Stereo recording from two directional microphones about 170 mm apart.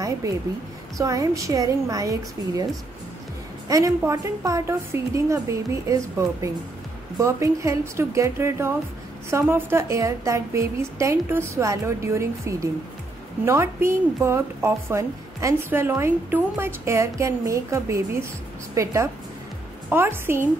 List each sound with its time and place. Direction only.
0.9 s a woman's voice: 20° right (ahead or behind)